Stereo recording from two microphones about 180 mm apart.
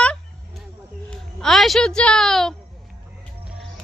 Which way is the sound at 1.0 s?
Centre (ahead or behind).